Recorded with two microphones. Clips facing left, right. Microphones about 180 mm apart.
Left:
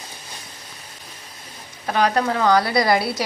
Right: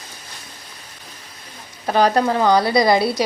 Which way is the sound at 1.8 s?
35° right (ahead or behind).